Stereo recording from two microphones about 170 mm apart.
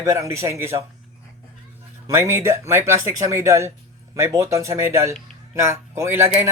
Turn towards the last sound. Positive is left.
turn(degrees=-15)  # may be behind; listen again after turning